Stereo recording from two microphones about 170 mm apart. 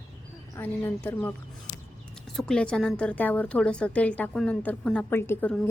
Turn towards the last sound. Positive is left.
turn(degrees=10)  # may be behind; listen again after turning